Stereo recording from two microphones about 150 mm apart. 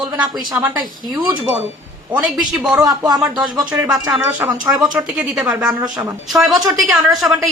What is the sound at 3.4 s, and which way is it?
Speech, 5° right (ahead or behind).